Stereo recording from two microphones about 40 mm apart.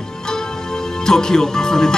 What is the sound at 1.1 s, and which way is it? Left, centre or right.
Speech, centre.